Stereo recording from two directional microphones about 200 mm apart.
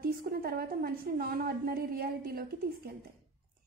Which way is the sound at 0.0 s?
50° right (ahead or behind).